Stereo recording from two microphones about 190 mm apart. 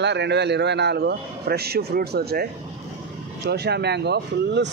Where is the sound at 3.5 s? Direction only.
60° right (ahead or behind).